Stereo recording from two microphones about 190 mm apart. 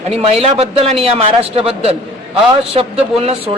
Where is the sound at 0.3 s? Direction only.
30° right (ahead or behind).